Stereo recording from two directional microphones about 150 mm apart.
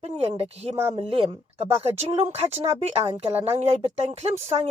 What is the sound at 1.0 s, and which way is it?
Speech, 40° right (ahead or behind).